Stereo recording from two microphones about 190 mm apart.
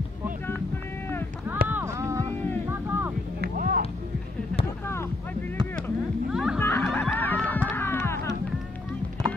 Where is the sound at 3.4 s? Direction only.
50° right (ahead or behind).